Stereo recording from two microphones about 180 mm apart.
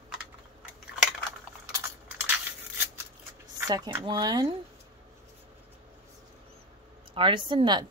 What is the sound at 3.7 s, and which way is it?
Speech, 20° right (ahead or behind).